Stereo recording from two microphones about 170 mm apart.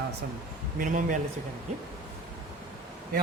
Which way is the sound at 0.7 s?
50° right (ahead or behind).